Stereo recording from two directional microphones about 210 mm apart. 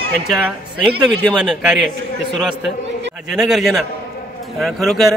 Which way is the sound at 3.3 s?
Centre (ahead or behind).